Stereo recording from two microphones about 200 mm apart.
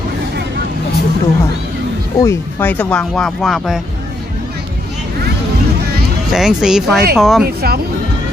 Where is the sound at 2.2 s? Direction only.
10° left (ahead or behind).